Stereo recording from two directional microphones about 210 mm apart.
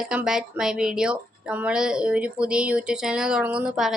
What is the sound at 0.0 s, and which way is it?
A woman's voice, 5° right (ahead or behind).